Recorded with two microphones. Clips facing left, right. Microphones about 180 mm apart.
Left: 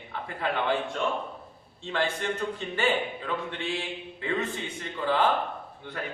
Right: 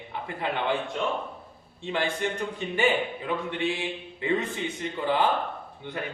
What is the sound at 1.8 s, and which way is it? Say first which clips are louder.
A man's voice: right 1 dB; 15° right (ahead or behind).